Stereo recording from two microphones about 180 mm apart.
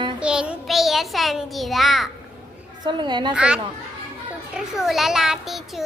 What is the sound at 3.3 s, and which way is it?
A child's voice, 5° right (ahead or behind).